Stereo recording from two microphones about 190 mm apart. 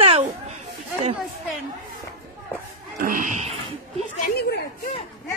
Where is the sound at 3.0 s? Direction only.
45° right (ahead or behind).